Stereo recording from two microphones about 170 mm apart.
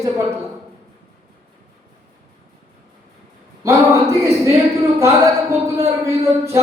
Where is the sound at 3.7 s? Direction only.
20° right (ahead or behind).